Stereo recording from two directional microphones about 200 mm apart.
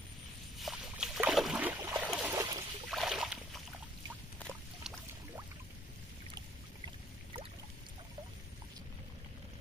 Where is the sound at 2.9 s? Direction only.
Centre (ahead or behind).